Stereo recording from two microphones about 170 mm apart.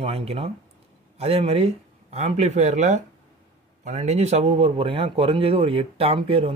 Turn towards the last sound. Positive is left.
turn(degrees=-30)  # may be behind; listen again after turning